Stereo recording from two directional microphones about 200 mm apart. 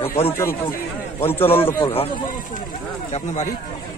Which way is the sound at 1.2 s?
10° left (ahead or behind).